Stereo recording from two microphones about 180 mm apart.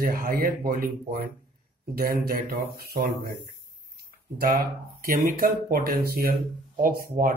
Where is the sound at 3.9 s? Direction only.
55° right (ahead or behind).